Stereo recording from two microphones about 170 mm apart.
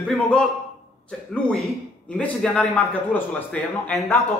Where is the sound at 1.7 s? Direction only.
5° left (ahead or behind).